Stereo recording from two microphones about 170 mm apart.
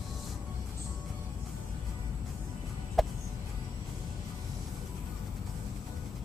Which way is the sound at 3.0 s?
Centre (ahead or behind).